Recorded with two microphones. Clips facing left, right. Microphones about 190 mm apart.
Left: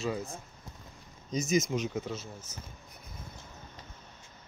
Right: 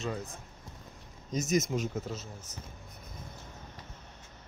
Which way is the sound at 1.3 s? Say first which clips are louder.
Left 1 dB; centre (ahead or behind).